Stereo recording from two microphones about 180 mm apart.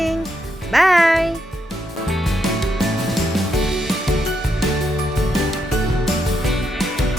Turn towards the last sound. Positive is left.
turn(degrees=0)  # may be behind; listen again after turning